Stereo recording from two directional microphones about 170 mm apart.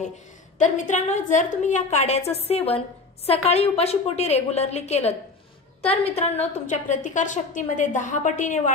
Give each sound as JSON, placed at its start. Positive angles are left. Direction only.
{"t": 0.6, "sound": "a woman's voice", "side_deg": 45}